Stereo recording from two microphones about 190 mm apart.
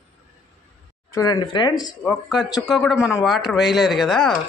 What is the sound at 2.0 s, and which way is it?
Speech, 5° left (ahead or behind).